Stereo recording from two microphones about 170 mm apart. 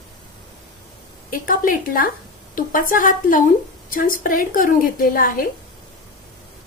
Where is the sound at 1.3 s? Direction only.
55° left (ahead or behind).